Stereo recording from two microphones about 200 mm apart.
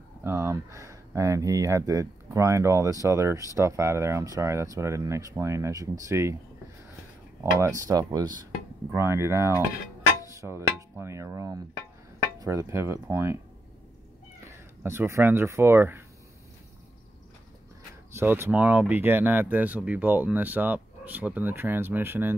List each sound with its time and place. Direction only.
0.2 s speech: 15° right (ahead or behind)
7.6 s speech: 15° right (ahead or behind)
14.5 s speech: 10° right (ahead or behind)
18.1 s speech: 10° right (ahead or behind)